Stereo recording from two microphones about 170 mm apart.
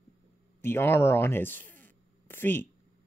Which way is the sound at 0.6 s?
15° left (ahead or behind).